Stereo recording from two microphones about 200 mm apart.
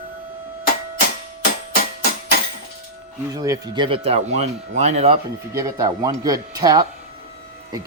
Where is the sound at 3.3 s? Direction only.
20° right (ahead or behind).